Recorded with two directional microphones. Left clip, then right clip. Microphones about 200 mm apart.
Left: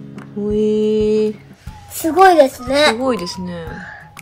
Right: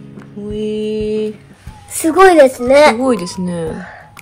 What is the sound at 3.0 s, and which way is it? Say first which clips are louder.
Speech: right 3 dB; 10° left (ahead or behind).